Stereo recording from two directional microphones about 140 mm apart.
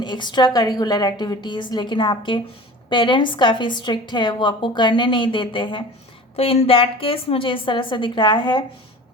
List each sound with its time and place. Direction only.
0.0 s a woman's voice: 35° left (ahead or behind)